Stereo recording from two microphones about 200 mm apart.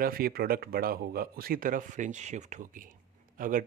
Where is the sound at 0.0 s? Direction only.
45° right (ahead or behind).